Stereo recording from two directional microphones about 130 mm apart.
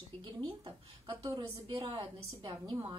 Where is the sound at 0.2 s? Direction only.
40° right (ahead or behind).